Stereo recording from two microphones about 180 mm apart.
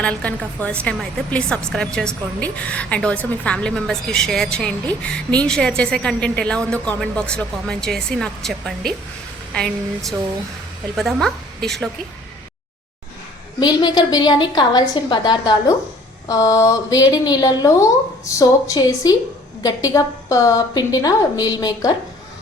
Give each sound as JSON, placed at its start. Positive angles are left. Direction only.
{"t": 0.0, "sound": "a woman's voice", "side_deg": 5}
{"t": 13.6, "sound": "a woman's voice", "side_deg": 25}